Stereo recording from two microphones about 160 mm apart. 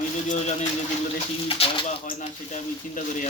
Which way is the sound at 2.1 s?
50° left (ahead or behind).